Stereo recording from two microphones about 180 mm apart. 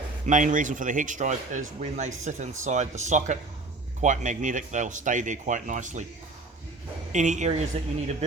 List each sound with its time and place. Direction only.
0.3 s speech: 45° right (ahead or behind)
7.1 s speech: 40° right (ahead or behind)